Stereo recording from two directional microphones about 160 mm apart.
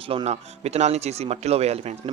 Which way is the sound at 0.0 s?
35° right (ahead or behind).